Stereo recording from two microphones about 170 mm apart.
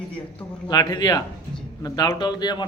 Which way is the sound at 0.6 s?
25° left (ahead or behind).